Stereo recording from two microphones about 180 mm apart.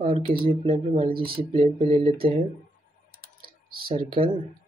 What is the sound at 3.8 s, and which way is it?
Speech, 30° right (ahead or behind).